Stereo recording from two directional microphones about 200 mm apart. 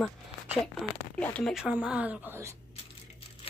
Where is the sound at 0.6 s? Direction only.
5° left (ahead or behind).